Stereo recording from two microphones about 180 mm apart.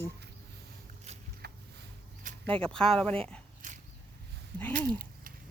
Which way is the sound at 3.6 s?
45° right (ahead or behind).